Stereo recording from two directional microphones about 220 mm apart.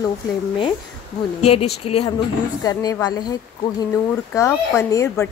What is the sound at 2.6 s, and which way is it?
A woman's voice, 15° left (ahead or behind).